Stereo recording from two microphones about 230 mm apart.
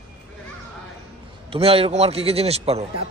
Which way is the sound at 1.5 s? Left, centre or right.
Right.